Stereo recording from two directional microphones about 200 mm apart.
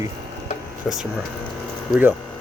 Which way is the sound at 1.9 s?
10° right (ahead or behind).